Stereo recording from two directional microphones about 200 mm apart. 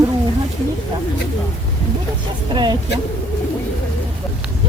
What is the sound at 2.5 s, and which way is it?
Speech, 20° right (ahead or behind).